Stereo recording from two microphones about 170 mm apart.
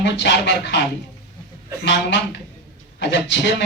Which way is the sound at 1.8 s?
90° left.